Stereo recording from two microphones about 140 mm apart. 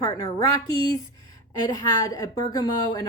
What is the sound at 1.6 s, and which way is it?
Speech, 25° left (ahead or behind).